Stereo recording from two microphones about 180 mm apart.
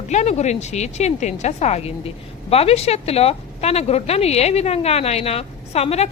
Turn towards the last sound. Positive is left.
turn(degrees=35)  # may be behind; listen again after turning